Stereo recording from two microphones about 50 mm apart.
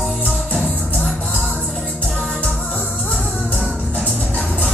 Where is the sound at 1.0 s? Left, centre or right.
Centre.